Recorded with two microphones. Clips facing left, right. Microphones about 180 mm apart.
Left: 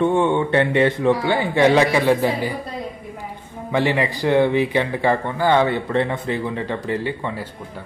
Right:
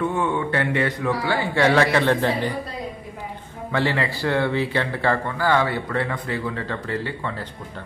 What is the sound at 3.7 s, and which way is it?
Speech, 15° left (ahead or behind).